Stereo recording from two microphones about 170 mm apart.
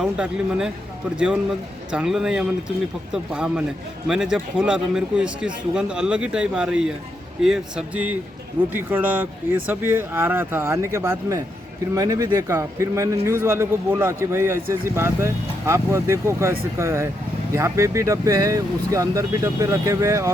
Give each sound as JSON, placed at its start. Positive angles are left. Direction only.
{"t": 0.0, "sound": "a man's voice", "side_deg": -5}